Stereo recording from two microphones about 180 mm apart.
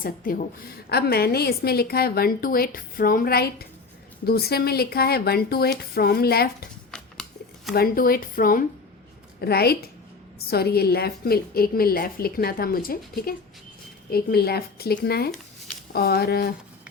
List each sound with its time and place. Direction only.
0.0 s a woman's voice: 50° left (ahead or behind)
6.9 s a sound: 5° left (ahead or behind)
7.7 s a woman's voice: 55° left (ahead or behind)